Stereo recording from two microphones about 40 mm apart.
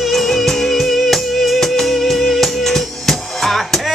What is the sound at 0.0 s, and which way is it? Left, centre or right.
Music, centre.